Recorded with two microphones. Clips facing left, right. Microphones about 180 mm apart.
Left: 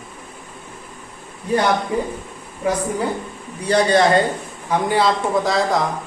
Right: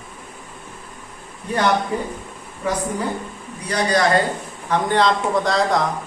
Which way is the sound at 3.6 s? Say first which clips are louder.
Left 5 dB; 30° left (ahead or behind).